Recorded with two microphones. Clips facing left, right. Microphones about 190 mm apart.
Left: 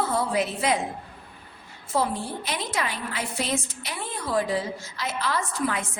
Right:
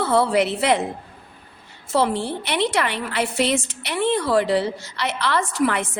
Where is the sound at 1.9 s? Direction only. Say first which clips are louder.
Right 5 dB; 75° right (ahead or behind).